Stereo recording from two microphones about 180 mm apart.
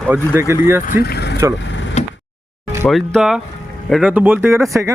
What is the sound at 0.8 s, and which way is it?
Speech, 55° left (ahead or behind).